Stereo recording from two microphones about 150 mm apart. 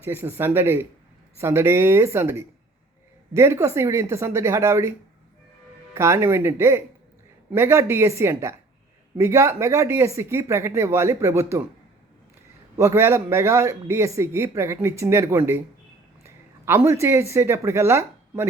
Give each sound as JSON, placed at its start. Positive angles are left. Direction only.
{"t": 0.0, "sound": "a man's voice", "side_deg": -15}
{"t": 12.7, "sound": "a man's voice", "side_deg": -20}